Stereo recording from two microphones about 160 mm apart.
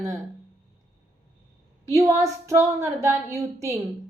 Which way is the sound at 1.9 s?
20° right (ahead or behind).